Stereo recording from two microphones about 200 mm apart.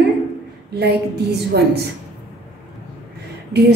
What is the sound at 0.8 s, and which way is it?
A woman's voice, 55° right (ahead or behind).